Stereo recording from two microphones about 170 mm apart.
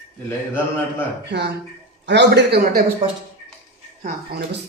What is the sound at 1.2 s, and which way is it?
A man's voice, 90° right.